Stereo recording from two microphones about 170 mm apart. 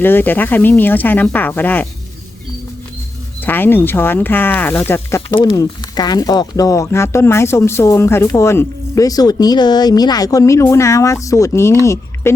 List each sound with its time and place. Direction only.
0.0 s speech: 10° left (ahead or behind)
3.4 s speech: 10° left (ahead or behind)
5.4 s speech: 25° left (ahead or behind)